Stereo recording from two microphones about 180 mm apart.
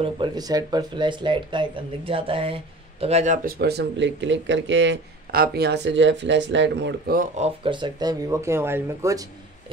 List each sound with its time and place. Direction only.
0.0 s speech: 25° right (ahead or behind)
3.4 s speech: 60° right (ahead or behind); by 7.2 s 75° right (ahead or behind)
7.2 s speech: 35° right (ahead or behind); by 9.3 s 20° right (ahead or behind)